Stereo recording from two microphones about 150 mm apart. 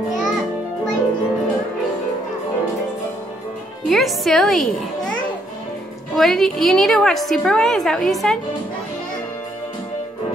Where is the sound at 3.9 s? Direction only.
Centre (ahead or behind).